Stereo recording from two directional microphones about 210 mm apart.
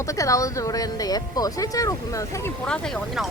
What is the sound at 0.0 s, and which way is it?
Speech, 15° left (ahead or behind).